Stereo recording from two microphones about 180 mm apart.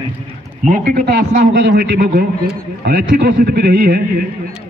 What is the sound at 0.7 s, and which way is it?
A man's voice, 50° right (ahead or behind).